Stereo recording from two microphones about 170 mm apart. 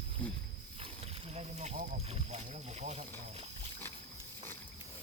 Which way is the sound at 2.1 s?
40° right (ahead or behind).